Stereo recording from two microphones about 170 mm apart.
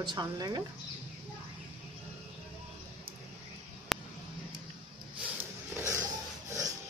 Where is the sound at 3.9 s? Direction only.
Centre (ahead or behind).